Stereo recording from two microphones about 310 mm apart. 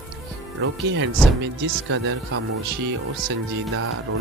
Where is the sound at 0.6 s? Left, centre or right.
Right.